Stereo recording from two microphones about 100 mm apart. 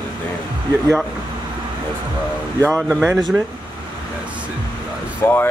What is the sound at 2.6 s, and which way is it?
Speech, 10° left (ahead or behind).